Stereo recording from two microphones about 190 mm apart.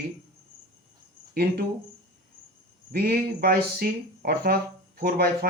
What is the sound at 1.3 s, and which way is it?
Speech, 55° right (ahead or behind).